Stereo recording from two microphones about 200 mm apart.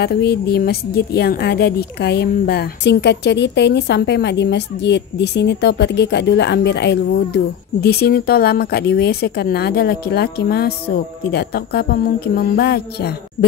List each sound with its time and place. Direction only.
0.0 s a woman's voice: 55° left (ahead or behind)